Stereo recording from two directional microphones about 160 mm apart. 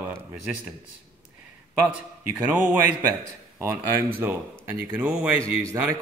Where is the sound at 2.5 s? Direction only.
10° right (ahead or behind).